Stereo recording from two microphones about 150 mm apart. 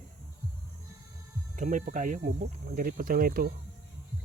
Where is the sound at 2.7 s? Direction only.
70° right (ahead or behind).